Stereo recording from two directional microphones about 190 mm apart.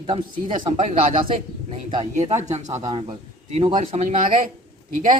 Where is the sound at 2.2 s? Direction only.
15° right (ahead or behind).